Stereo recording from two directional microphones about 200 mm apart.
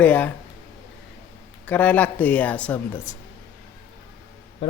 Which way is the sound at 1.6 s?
5° left (ahead or behind).